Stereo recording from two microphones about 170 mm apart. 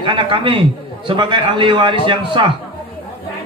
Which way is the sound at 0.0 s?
30° right (ahead or behind).